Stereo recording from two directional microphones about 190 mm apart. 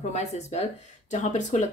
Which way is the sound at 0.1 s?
35° left (ahead or behind).